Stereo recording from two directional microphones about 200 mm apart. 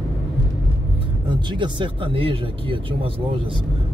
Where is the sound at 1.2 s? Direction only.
25° right (ahead or behind).